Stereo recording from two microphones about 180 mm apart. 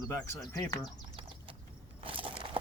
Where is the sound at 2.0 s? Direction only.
30° right (ahead or behind).